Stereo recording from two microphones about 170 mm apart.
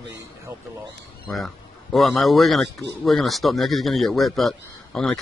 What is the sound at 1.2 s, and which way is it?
Speech, centre (ahead or behind).